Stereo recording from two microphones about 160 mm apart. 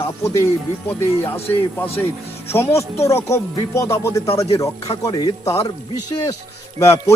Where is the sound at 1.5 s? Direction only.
15° left (ahead or behind).